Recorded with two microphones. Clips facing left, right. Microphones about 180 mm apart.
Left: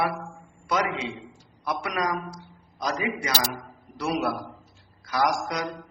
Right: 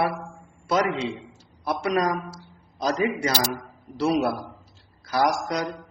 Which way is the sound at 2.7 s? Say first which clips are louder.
Right 4 dB; 30° right (ahead or behind).